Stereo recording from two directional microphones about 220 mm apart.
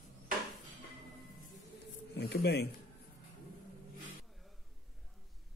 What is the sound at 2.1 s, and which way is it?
Speech, 50° left (ahead or behind).